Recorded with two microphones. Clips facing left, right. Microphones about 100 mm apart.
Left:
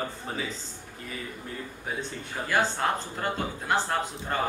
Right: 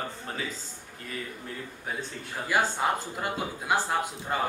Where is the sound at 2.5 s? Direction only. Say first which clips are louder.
Even; 10° right (ahead or behind).